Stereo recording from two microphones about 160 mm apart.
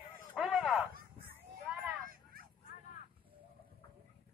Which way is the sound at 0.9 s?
60° right (ahead or behind).